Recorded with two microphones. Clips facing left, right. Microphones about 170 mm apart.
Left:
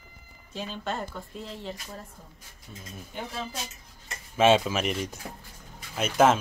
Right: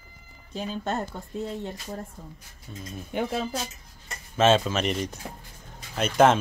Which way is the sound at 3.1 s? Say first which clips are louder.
Right 9 dB; 60° right (ahead or behind).